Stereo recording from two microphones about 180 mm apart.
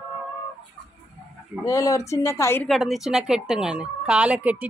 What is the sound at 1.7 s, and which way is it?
Speech, 20° left (ahead or behind).